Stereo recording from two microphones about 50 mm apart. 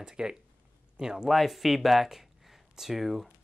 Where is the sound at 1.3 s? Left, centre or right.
Centre.